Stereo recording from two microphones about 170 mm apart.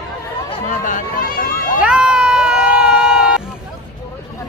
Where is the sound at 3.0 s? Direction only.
5° right (ahead or behind).